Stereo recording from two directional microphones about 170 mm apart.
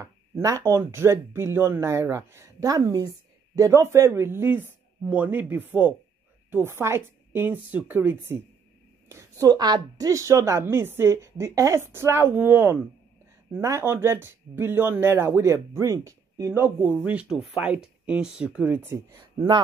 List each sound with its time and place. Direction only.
0.0 s speech: 20° right (ahead or behind)
9.1 s speech: 20° right (ahead or behind)